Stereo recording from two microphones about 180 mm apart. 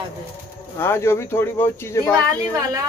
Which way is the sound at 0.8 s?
15° left (ahead or behind).